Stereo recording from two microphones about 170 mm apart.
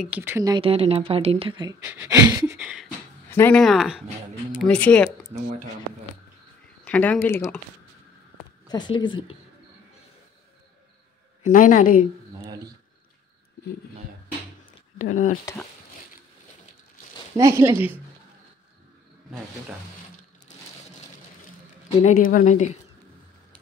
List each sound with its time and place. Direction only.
0.0 s a woman's voice: 10° right (ahead or behind)
0.6 s speech: 35° right (ahead or behind)
1.8 s a woman's voice: 10° right (ahead or behind)
2.0 s a sound: 20° right (ahead or behind)
2.5 s speech: 5° right (ahead or behind)
3.3 s speech: 10° left (ahead or behind)
6.8 s speech: 10° left (ahead or behind)
8.6 s speech: 25° left (ahead or behind)
11.4 s speech: 50° left (ahead or behind)
12.4 s a sound: 25° right (ahead or behind)
17.4 s a woman's voice: 15° right (ahead or behind)
22.0 s speech: 55° left (ahead or behind)